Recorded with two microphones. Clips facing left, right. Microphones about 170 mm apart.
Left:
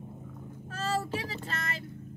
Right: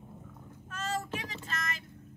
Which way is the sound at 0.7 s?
30° left (ahead or behind).